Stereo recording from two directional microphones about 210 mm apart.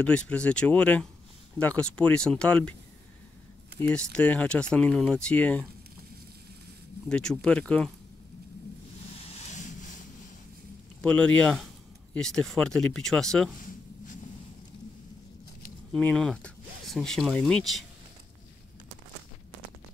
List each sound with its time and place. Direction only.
0.0 s speech: 5° left (ahead or behind)
3.8 s speech: 5° left (ahead or behind)
7.1 s speech: 5° left (ahead or behind)
9.5 s vehicle: 35° left (ahead or behind)
11.0 s speech: 5° left (ahead or behind)
15.9 s speech: 5° left (ahead or behind)